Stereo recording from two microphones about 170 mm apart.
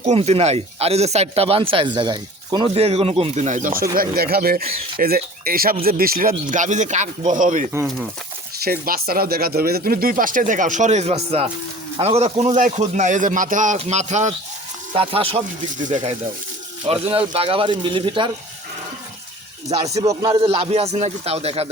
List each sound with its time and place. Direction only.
0.0 s speech: 40° right (ahead or behind)
8.8 s speech: 60° right (ahead or behind); by 14.3 s 45° right (ahead or behind)
14.9 s speech: 35° right (ahead or behind)
16.8 s speech: 35° right (ahead or behind)
19.6 s speech: 40° right (ahead or behind)
20.1 s speech: 25° right (ahead or behind)